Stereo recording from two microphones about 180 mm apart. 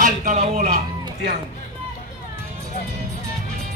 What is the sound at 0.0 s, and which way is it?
Speech, 45° right (ahead or behind).